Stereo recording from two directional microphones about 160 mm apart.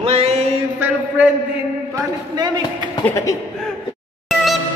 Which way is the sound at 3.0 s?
20° left (ahead or behind).